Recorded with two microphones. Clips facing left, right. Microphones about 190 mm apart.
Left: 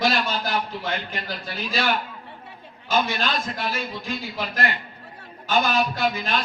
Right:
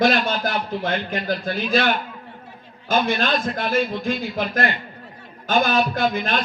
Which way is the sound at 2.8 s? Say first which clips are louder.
Right 3 dB; 55° right (ahead or behind).